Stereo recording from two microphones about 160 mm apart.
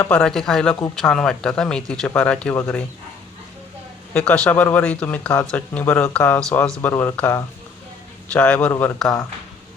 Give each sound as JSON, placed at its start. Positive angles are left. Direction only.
{"t": 0.0, "sound": "speech", "side_deg": 5}
{"t": 4.1, "sound": "speech", "side_deg": 10}